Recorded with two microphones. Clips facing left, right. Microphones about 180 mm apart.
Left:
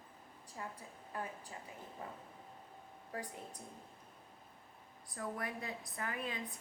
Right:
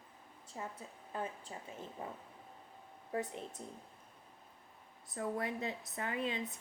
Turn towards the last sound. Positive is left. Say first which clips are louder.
# right 4 dB
turn(degrees=-25)  # may be behind; listen again after turning